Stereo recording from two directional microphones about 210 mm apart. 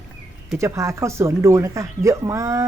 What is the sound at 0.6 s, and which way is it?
Speech, 15° right (ahead or behind).